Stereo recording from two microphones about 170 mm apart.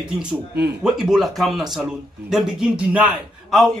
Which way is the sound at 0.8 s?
Centre (ahead or behind).